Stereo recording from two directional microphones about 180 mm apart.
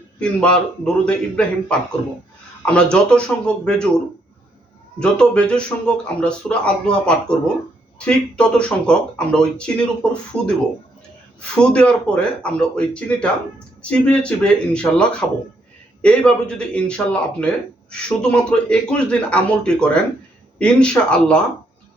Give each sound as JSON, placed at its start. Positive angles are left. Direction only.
{"t": 0.2, "sound": "speech", "side_deg": 5}